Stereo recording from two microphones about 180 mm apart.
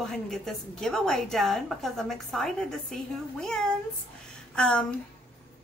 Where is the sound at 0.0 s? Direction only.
Centre (ahead or behind).